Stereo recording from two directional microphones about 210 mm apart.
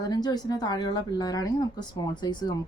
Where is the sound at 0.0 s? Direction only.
20° left (ahead or behind).